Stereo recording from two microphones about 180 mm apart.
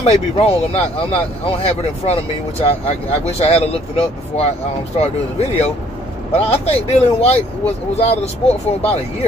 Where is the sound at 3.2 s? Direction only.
35° left (ahead or behind).